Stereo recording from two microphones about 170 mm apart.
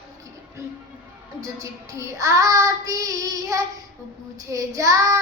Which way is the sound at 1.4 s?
20° right (ahead or behind).